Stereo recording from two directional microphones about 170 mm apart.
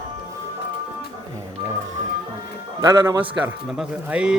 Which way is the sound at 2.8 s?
15° right (ahead or behind).